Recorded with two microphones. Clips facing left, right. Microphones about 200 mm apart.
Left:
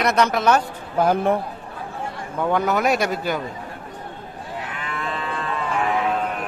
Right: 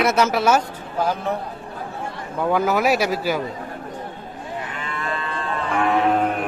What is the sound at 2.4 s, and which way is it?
A man's voice, centre (ahead or behind).